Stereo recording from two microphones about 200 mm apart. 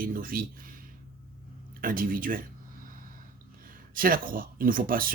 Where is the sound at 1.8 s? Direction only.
45° right (ahead or behind).